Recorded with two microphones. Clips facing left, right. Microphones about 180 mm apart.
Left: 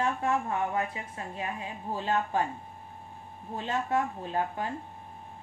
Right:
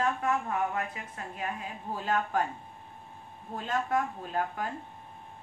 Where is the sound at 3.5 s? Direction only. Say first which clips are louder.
Left 1 dB; 25° left (ahead or behind).